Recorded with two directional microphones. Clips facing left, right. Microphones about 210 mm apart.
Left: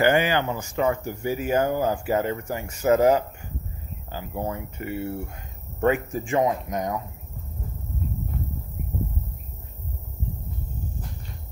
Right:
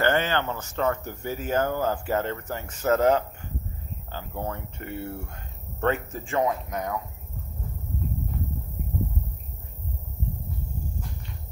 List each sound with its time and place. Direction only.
0.0 s speech: 10° left (ahead or behind)